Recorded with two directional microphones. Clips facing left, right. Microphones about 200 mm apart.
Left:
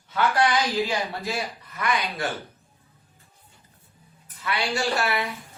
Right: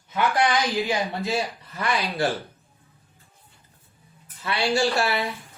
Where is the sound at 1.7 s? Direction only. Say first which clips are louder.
Even; 30° right (ahead or behind).